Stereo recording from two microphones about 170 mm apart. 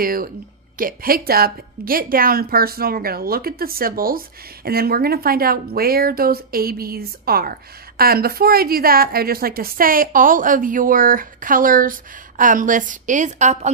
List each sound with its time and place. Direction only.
0.0 s a woman's voice: 55° right (ahead or behind)